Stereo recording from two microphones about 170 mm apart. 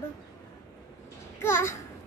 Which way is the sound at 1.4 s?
15° left (ahead or behind).